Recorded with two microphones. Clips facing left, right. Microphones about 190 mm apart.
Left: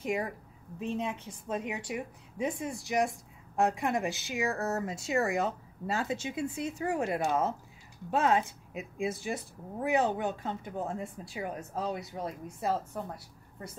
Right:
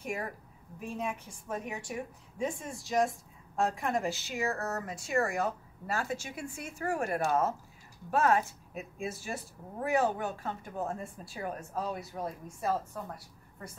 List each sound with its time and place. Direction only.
0.0 s speech: 20° left (ahead or behind)